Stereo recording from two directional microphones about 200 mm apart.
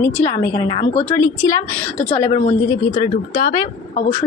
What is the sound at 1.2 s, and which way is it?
A woman's voice, 15° left (ahead or behind).